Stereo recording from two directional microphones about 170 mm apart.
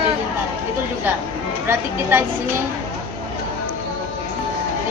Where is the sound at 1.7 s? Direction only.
15° right (ahead or behind).